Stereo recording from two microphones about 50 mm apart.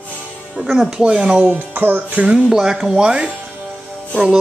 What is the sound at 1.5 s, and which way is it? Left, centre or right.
Music, right.